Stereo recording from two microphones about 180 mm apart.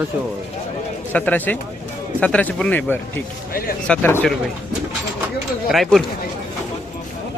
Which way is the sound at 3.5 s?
55° left (ahead or behind).